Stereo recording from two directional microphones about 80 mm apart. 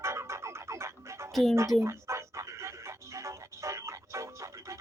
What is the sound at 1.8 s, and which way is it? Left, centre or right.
Music, right.